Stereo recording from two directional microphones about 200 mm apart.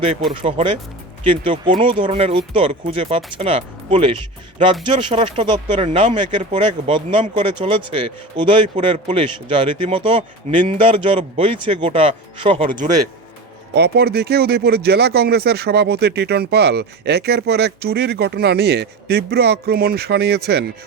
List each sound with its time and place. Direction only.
0.4 s speech: 25° right (ahead or behind)
13.7 s speech: 55° right (ahead or behind)